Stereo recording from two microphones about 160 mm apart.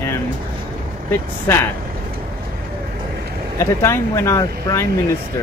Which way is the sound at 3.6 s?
15° left (ahead or behind).